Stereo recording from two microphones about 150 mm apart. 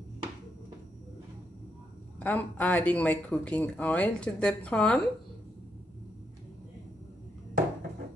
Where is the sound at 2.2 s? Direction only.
10° left (ahead or behind).